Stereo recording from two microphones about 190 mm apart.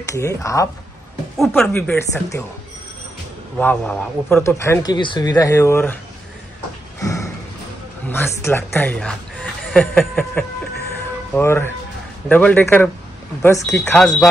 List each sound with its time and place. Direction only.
0.1 s a man's voice: 15° left (ahead or behind)
1.4 s a man's voice: 5° left (ahead or behind)
3.5 s a man's voice: 10° left (ahead or behind)
7.0 s a sound: 15° left (ahead or behind)
8.1 s a man's voice: 15° left (ahead or behind)